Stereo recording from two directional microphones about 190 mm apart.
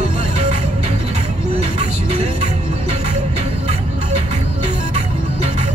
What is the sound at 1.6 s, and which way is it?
Music, 35° right (ahead or behind).